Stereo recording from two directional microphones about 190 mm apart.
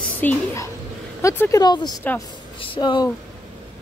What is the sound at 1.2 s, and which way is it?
Speech, 15° left (ahead or behind).